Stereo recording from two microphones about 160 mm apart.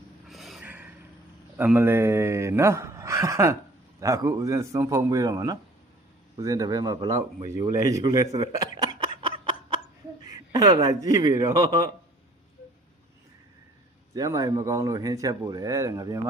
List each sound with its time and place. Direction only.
0.3 s a sound: centre (ahead or behind)
1.5 s a man's voice: 10° right (ahead or behind)
14.1 s speech: 20° right (ahead or behind)